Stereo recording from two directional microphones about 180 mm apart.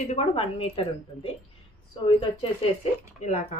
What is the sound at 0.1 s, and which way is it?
A woman's voice, 35° left (ahead or behind).